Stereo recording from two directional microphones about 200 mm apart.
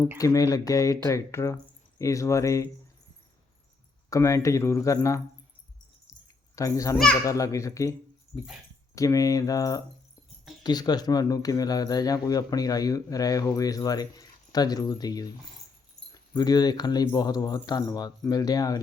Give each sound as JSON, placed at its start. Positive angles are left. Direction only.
{"t": 0.2, "sound": "speech", "side_deg": 15}
{"t": 4.1, "sound": "speech", "side_deg": 15}
{"t": 6.2, "sound": "drip", "side_deg": 15}
{"t": 6.9, "sound": "a child's voice", "side_deg": 5}
{"t": 7.3, "sound": "speech", "side_deg": 15}
{"t": 9.0, "sound": "speech", "side_deg": 15}